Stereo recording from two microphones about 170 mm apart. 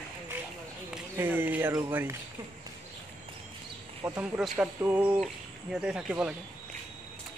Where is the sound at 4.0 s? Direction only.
15° right (ahead or behind).